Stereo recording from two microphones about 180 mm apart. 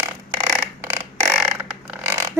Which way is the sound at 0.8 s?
15° right (ahead or behind).